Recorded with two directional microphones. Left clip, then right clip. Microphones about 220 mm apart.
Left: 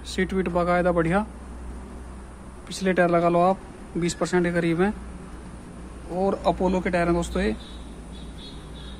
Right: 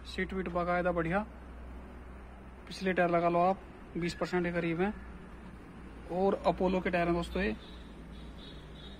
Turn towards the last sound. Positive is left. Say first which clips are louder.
# left 8 dB
turn(degrees=0)  # may be behind; listen again after turning